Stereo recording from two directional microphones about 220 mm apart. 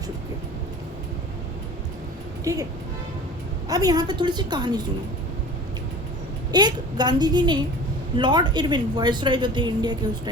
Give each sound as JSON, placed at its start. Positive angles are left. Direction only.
{"t": 2.4, "sound": "speech", "side_deg": -15}
{"t": 3.7, "sound": "a woman's voice", "side_deg": -15}
{"t": 6.5, "sound": "a woman's voice", "side_deg": -20}